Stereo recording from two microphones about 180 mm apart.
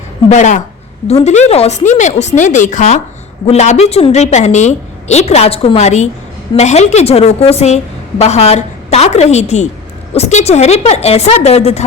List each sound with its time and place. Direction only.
0.3 s a woman's voice: 40° left (ahead or behind)